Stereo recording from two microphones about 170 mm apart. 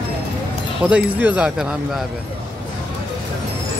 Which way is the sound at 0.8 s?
10° right (ahead or behind).